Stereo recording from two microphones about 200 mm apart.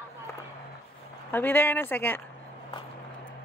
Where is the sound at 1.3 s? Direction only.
10° left (ahead or behind).